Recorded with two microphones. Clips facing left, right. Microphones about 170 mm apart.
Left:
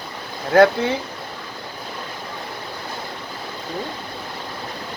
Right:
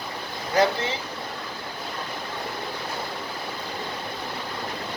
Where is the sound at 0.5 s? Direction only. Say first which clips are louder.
Left 8 dB; 55° left (ahead or behind).